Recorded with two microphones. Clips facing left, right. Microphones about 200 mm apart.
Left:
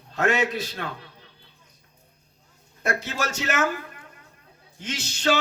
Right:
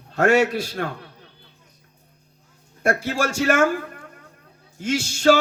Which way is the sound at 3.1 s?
50° right (ahead or behind).